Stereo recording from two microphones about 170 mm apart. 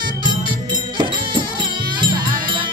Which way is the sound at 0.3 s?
25° right (ahead or behind).